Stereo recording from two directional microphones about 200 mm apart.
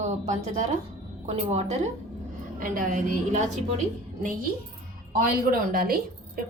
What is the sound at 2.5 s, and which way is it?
Speech, 40° right (ahead or behind).